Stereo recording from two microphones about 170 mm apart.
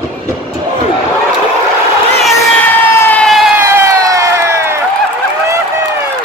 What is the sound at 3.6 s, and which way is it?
Crowd, 15° right (ahead or behind).